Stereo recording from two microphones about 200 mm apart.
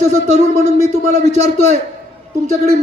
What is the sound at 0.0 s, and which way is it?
Speech, 35° right (ahead or behind).